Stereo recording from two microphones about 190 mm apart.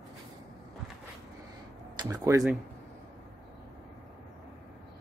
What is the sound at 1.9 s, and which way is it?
Speech, 20° right (ahead or behind).